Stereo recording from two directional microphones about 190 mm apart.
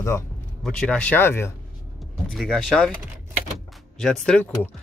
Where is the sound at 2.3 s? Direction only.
Centre (ahead or behind).